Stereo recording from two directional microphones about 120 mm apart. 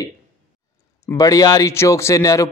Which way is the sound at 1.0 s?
30° left (ahead or behind).